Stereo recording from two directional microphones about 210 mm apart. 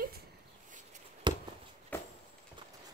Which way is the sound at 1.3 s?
20° right (ahead or behind).